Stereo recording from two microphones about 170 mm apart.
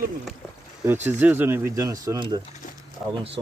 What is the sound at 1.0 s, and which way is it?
Speech, 10° right (ahead or behind).